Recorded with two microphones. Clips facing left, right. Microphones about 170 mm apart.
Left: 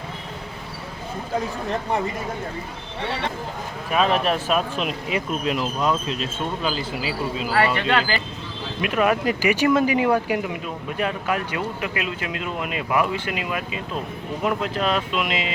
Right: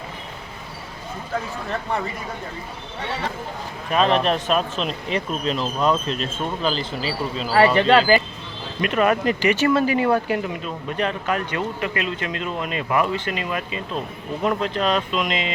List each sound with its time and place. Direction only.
3.9 s speech: 5° left (ahead or behind)
7.5 s speech: 35° right (ahead or behind)
8.8 s speech: 5° left (ahead or behind)